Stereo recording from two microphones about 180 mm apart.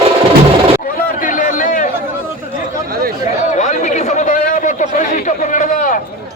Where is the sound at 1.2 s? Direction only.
45° left (ahead or behind).